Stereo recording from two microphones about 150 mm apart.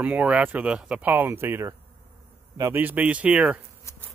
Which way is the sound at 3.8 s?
20° left (ahead or behind).